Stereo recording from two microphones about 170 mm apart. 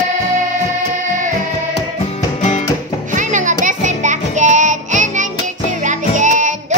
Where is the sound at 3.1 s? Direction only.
50° right (ahead or behind).